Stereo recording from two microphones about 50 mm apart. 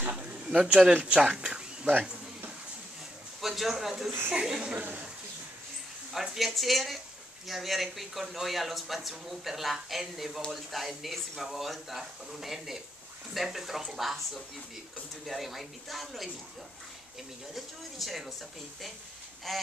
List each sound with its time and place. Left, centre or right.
0.1 s a sound: right
0.9 s speech: right
3.3 s a man's voice: centre
4.7 s speech: right
6.3 s speech: centre
17.6 s speech: centre
19.5 s speech: centre